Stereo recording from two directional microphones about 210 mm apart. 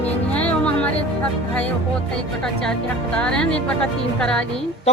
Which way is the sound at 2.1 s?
5° left (ahead or behind).